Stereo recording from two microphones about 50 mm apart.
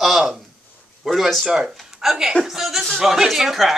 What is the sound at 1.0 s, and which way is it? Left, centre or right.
Speech, centre.